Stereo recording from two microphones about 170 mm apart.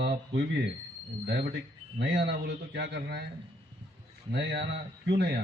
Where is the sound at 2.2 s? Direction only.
80° right.